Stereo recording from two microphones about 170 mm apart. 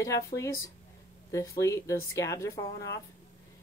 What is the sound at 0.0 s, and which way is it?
Speech, 20° left (ahead or behind).